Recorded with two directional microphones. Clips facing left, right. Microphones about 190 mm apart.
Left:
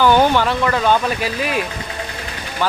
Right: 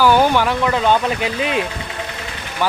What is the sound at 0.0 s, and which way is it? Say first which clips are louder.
Speech: even; 10° right (ahead or behind).